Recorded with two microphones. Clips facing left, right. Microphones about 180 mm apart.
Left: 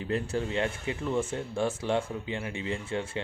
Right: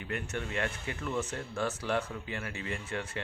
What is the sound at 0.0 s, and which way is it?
Speech, 30° left (ahead or behind).